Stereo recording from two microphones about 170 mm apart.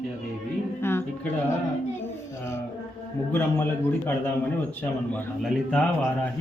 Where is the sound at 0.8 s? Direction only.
15° left (ahead or behind).